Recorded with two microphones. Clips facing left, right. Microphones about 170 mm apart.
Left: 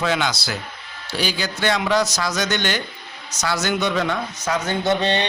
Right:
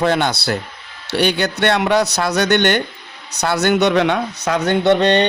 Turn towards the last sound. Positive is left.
turn(degrees=-65)  # may be behind; listen again after turning